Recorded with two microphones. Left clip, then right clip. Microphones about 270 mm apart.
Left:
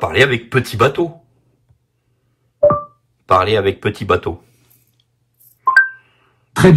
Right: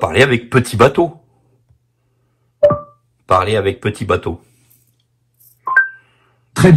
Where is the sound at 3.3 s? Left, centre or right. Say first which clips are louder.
Left 1 dB; centre.